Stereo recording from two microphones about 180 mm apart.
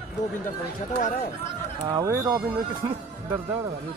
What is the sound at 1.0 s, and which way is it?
Speech, 50° left (ahead or behind).